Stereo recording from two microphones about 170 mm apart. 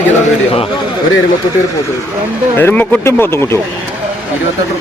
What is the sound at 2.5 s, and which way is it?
Speech, 10° left (ahead or behind).